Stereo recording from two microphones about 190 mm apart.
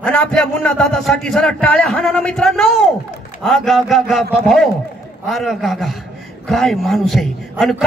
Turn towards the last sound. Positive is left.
turn(degrees=0)  # may be behind; listen again after turning